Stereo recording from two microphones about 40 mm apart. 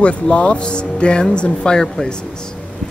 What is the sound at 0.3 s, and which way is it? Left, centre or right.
Speech, left.